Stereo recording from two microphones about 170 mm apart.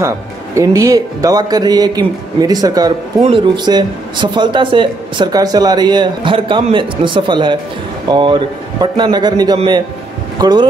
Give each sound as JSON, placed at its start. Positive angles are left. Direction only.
{"t": 0.6, "sound": "speech", "side_deg": -20}
{"t": 3.2, "sound": "speech", "side_deg": -30}